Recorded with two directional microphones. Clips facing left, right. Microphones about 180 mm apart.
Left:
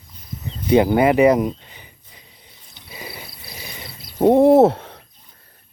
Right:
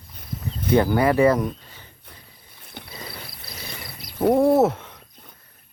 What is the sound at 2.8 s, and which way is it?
Cricket, 55° right (ahead or behind).